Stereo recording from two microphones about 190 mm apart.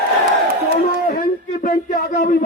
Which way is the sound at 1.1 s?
45° left (ahead or behind).